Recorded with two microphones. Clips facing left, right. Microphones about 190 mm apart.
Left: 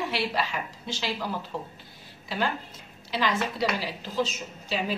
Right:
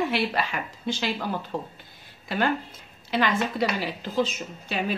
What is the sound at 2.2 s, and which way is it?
A woman's voice, 55° right (ahead or behind).